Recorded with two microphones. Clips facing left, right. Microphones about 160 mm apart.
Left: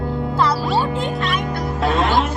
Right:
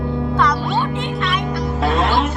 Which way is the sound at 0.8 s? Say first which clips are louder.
Left 1 dB; 35° left (ahead or behind).